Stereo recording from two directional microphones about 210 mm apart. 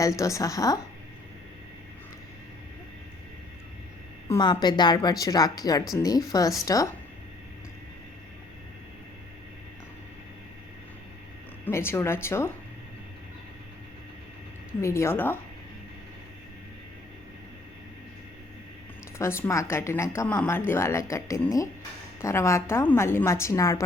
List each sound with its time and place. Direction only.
0.0 s speech: 15° left (ahead or behind)
4.3 s speech: 20° left (ahead or behind)
11.6 s speech: 10° left (ahead or behind)
14.8 s speech: 15° left (ahead or behind)
19.2 s speech: 15° left (ahead or behind)